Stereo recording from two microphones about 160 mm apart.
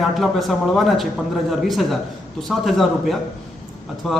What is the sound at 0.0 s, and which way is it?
Speech, centre (ahead or behind).